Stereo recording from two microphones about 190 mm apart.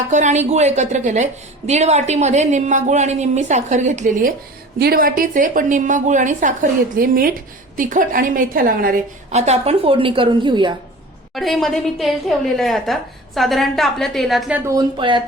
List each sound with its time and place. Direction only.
0.1 s a woman's voice: 40° right (ahead or behind)
9.3 s a woman's voice: 35° right (ahead or behind)
11.3 s a woman's voice: centre (ahead or behind)
14.6 s a woman's voice: 20° right (ahead or behind)